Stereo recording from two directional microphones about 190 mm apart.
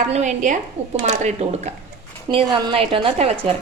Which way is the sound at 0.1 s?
40° right (ahead or behind).